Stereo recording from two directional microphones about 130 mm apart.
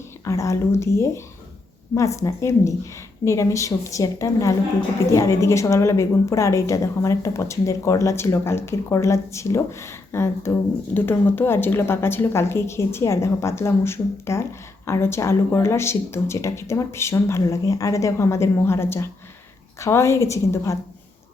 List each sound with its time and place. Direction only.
0.3 s a woman's voice: 25° left (ahead or behind)